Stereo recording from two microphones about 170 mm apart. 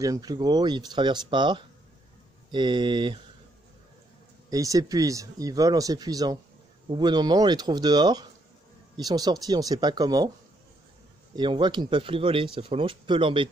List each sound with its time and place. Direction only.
0.0 s speech: 20° right (ahead or behind)
4.5 s speech: 20° right (ahead or behind)
11.3 s speech: 25° right (ahead or behind)